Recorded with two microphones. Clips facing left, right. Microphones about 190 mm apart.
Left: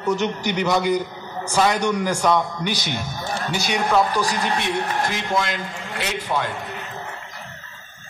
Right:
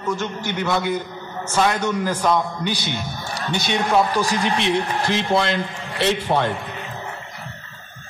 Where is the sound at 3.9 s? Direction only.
25° right (ahead or behind); by 6.5 s 40° right (ahead or behind).